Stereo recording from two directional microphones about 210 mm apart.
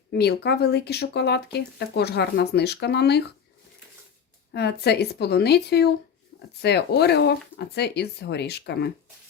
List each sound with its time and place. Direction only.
0.1 s speech: 50° left (ahead or behind)
4.5 s speech: 50° left (ahead or behind)